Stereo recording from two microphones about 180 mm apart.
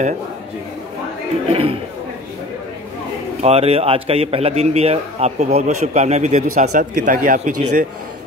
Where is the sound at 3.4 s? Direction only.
35° right (ahead or behind).